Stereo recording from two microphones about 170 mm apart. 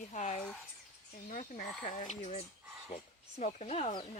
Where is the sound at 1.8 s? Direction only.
45° left (ahead or behind).